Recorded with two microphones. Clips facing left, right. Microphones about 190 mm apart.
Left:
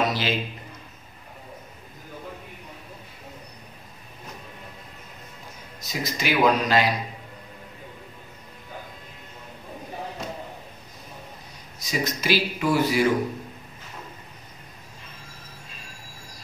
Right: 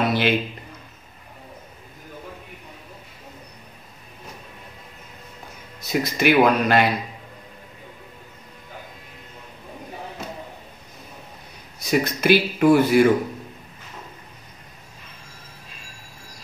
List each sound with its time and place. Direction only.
0.0 s a sound: 60° right (ahead or behind)
5.8 s a man's voice: 60° right (ahead or behind)
11.8 s a man's voice: 60° right (ahead or behind)